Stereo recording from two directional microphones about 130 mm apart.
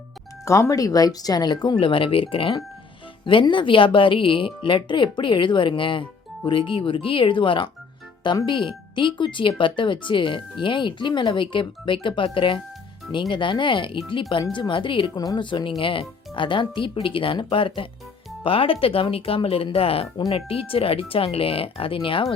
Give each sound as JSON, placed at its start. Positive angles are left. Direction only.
{"t": 0.4, "sound": "speech", "side_deg": 25}